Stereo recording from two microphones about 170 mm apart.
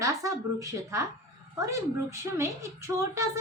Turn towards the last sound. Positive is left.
turn(degrees=-15)  # may be behind; listen again after turning